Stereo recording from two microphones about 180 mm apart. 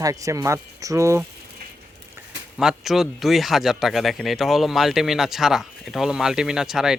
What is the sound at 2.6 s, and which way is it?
Speech, centre (ahead or behind).